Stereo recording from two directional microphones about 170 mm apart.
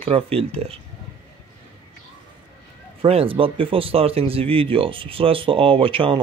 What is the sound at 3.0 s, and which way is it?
Speech, 35° right (ahead or behind).